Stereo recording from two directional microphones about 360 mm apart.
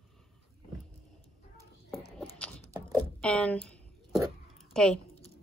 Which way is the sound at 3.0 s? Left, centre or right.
Centre.